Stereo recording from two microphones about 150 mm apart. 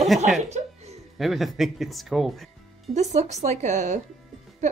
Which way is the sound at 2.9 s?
50° right (ahead or behind).